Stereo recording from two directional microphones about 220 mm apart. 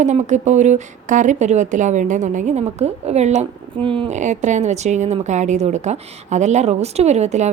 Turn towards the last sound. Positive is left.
turn(degrees=-30)  # may be behind; listen again after turning